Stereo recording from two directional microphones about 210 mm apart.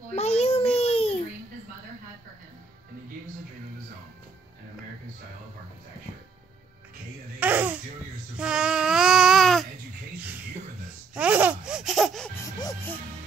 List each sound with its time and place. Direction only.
0.1 s babbling: 30° left (ahead or behind)
7.3 s a sound: 10° right (ahead or behind)
8.4 s babbling: 5° right (ahead or behind)
11.1 s laughter: 5° right (ahead or behind)
12.4 s music: 15° left (ahead or behind)